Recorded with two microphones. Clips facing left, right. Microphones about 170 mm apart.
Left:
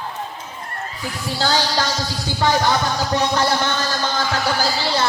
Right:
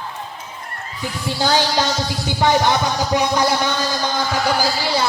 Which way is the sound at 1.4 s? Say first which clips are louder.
Right 2 dB; 15° right (ahead or behind).